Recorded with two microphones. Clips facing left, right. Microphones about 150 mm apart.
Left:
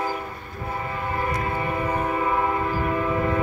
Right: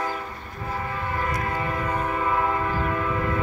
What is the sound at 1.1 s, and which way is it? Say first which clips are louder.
Train: left 1 dB; 20° left (ahead or behind).